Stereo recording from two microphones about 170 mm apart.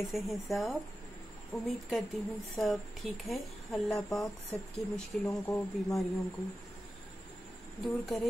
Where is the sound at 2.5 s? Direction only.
Centre (ahead or behind).